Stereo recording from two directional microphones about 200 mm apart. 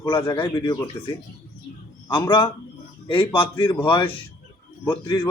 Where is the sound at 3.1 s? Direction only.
25° left (ahead or behind).